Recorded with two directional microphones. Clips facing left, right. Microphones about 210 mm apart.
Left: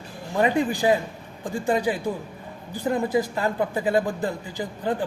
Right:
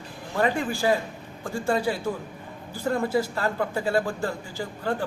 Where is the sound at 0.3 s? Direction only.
20° left (ahead or behind).